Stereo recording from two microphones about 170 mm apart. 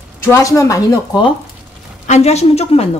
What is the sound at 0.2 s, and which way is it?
A woman's voice, 15° left (ahead or behind).